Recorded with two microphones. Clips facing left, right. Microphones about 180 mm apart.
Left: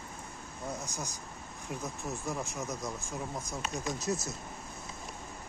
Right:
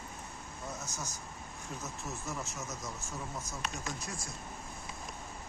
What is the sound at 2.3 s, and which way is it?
Speech, 15° left (ahead or behind).